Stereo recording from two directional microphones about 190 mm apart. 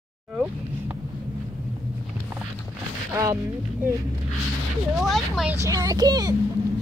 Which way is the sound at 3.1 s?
15° right (ahead or behind).